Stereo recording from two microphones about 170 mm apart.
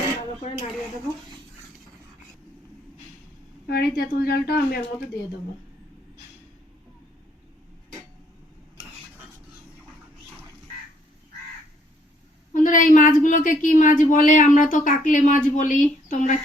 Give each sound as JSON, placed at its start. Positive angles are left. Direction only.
{"t": 3.7, "sound": "speech", "side_deg": 65}
{"t": 12.5, "sound": "speech", "side_deg": 50}